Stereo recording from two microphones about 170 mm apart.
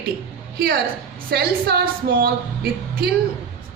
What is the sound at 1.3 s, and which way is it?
A woman's voice, 65° right (ahead or behind).